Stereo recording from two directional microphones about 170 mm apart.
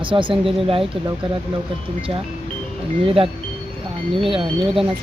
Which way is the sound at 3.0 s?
35° right (ahead or behind).